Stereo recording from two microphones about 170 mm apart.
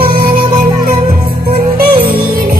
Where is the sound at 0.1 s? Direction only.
60° right (ahead or behind).